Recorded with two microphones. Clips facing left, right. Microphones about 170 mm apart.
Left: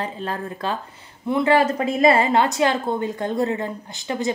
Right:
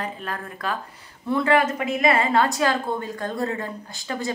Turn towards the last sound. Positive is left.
turn(degrees=20)  # may be behind; listen again after turning